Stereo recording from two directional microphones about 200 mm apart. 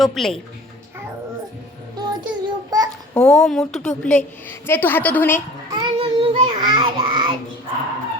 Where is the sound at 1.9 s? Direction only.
20° right (ahead or behind).